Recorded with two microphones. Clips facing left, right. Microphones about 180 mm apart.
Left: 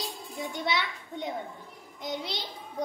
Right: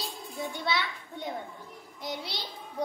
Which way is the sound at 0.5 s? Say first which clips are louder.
Left 1 dB; 20° left (ahead or behind).